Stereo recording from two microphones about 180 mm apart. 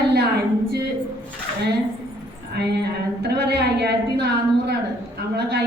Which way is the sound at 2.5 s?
65° right (ahead or behind).